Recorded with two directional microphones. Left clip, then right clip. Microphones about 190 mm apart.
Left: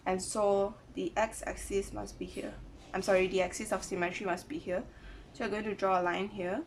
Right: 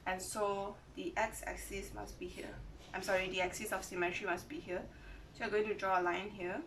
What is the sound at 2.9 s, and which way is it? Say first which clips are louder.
Speech: left 7 dB; 30° left (ahead or behind).